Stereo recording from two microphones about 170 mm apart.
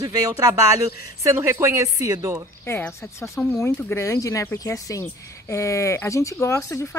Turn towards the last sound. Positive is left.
turn(degrees=15)  # may be behind; listen again after turning